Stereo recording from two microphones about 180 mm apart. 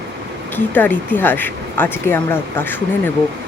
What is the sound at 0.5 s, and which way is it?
Speech, 10° left (ahead or behind).